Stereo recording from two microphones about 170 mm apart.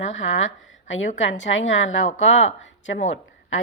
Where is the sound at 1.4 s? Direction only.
90° left.